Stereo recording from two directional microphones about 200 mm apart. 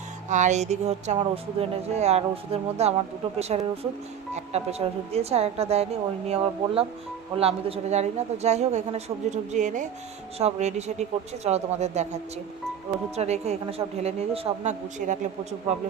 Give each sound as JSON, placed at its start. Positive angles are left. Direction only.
{"t": 0.3, "sound": "speech", "side_deg": -35}